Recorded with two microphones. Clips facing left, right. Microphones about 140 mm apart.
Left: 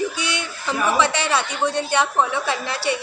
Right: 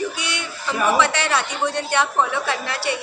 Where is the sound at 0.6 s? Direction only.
20° left (ahead or behind).